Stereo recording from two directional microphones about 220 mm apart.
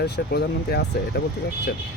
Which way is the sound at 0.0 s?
45° left (ahead or behind).